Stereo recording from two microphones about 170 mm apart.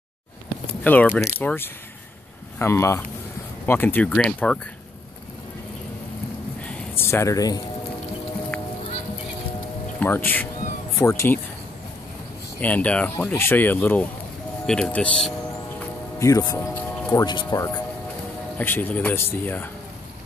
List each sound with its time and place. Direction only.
0.8 s speech: 10° left (ahead or behind)
6.6 s a sound: 10° left (ahead or behind)
9.9 s speech: 10° left (ahead or behind)
12.5 s speech: 10° left (ahead or behind)
16.2 s speech: 20° left (ahead or behind)
18.6 s speech: 10° left (ahead or behind)